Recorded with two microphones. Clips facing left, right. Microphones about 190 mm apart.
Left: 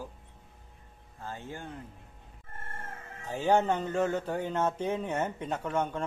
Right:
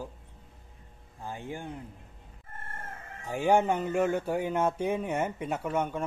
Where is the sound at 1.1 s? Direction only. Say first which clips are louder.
Right 3 dB; 15° right (ahead or behind).